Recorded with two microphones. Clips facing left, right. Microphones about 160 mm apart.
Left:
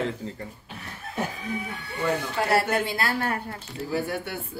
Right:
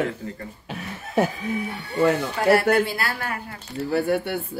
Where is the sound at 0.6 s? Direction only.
90° right.